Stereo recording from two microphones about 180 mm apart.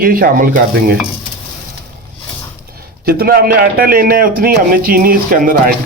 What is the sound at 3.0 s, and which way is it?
A man's voice, 55° right (ahead or behind).